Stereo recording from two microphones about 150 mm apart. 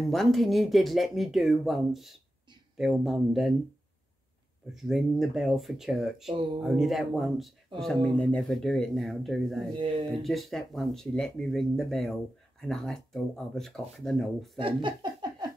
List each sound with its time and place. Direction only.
0.0 s speech: centre (ahead or behind)
4.7 s speech: centre (ahead or behind)
9.8 s speech: 35° right (ahead or behind)
10.1 s speech: centre (ahead or behind)
14.6 s a sound: 35° right (ahead or behind)